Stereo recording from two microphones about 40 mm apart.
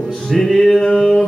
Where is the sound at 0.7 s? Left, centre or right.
Centre.